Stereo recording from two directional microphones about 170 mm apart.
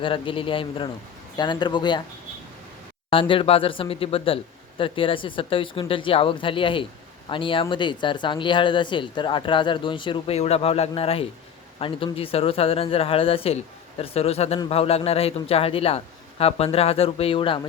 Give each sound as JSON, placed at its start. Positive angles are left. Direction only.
{"t": 0.0, "sound": "speech", "side_deg": 30}
{"t": 3.1, "sound": "speech", "side_deg": 30}